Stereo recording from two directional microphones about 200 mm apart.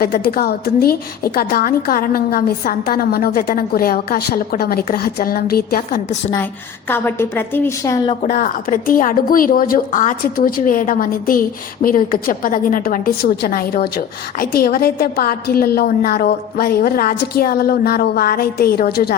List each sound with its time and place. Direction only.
0.0 s a woman's voice: 50° left (ahead or behind)
6.3 s a woman's voice: 10° left (ahead or behind)
8.2 s a woman's voice: 40° left (ahead or behind)